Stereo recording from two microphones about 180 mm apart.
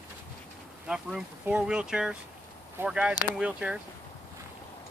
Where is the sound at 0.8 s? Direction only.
5° right (ahead or behind).